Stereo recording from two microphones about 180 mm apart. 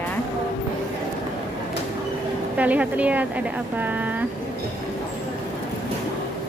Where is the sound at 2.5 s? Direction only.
10° right (ahead or behind).